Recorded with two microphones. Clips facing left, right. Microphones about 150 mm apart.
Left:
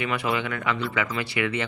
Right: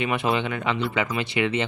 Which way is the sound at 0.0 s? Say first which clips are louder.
Right 3 dB; 25° right (ahead or behind).